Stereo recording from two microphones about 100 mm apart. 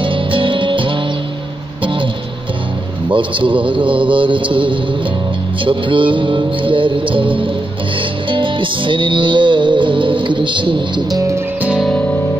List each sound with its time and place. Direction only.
0.0 s music: 60° right (ahead or behind)
3.1 s music: 55° right (ahead or behind)
11.1 s music: 35° right (ahead or behind)
11.6 s music: 5° right (ahead or behind)
11.9 s music: 15° left (ahead or behind)